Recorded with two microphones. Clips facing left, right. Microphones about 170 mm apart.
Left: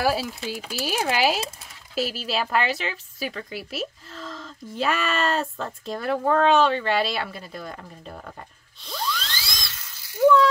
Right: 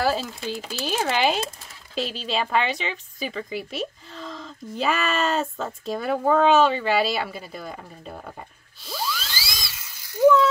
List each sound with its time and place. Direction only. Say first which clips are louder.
0.0 s a woman's voice: even; 10° left (ahead or behind); by 10.4 s 15° right (ahead or behind)